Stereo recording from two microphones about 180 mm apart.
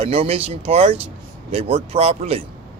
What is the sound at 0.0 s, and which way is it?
Speech, 35° right (ahead or behind).